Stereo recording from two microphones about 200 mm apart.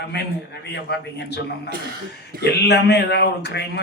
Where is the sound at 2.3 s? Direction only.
45° right (ahead or behind).